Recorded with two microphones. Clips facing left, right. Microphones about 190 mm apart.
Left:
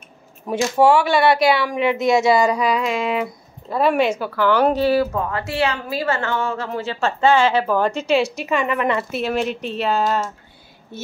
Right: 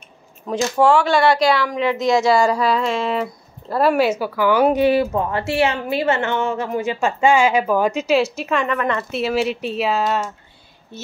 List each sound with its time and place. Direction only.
0.5 s speech: 5° left (ahead or behind)
1.9 s speech: 25° left (ahead or behind)
3.7 s speech: 5° right (ahead or behind)
8.7 s speech: 10° left (ahead or behind)
9.1 s speech: 5° right (ahead or behind)